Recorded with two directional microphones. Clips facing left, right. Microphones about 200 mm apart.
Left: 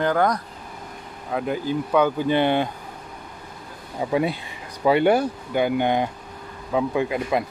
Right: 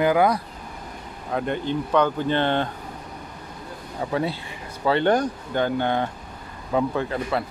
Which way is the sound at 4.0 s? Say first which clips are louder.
Left 3 dB; 15° left (ahead or behind).